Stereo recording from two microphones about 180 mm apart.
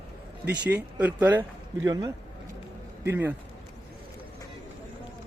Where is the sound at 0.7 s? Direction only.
10° right (ahead or behind).